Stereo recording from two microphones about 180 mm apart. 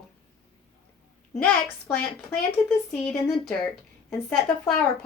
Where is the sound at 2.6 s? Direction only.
Centre (ahead or behind).